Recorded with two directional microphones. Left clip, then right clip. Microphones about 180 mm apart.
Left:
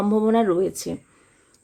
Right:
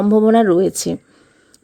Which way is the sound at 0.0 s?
35° right (ahead or behind).